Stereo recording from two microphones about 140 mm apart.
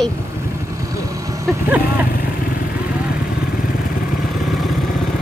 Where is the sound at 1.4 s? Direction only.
20° right (ahead or behind).